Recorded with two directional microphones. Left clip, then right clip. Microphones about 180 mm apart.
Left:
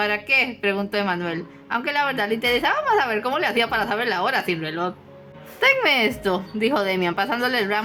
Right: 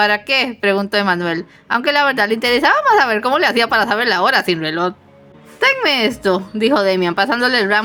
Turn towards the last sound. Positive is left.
turn(degrees=-30)  # may be behind; listen again after turning